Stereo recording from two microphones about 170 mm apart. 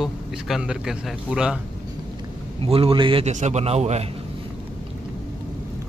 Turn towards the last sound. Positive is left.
turn(degrees=-40)  # may be behind; listen again after turning